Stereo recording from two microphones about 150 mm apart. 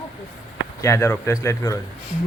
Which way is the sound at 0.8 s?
20° left (ahead or behind).